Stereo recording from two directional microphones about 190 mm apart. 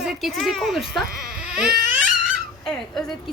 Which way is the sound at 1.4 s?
5° right (ahead or behind).